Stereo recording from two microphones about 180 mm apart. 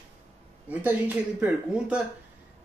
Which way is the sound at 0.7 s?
10° right (ahead or behind).